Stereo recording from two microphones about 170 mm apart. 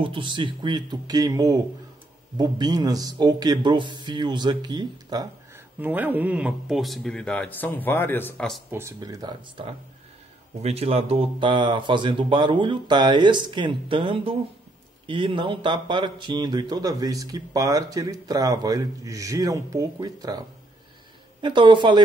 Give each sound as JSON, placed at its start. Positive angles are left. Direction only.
{"t": 0.0, "sound": "speech", "side_deg": -30}
{"t": 5.8, "sound": "speech", "side_deg": -10}
{"t": 8.7, "sound": "speech", "side_deg": -20}
{"t": 21.4, "sound": "speech", "side_deg": -25}